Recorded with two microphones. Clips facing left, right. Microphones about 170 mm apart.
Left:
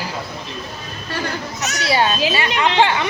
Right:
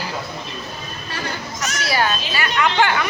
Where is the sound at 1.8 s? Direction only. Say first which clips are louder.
Left 4 dB; 25° left (ahead or behind).